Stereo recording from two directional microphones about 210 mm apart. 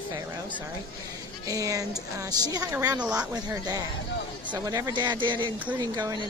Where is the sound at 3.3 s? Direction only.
20° right (ahead or behind).